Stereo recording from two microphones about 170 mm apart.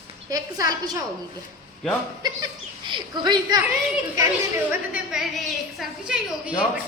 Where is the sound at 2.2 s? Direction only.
25° right (ahead or behind).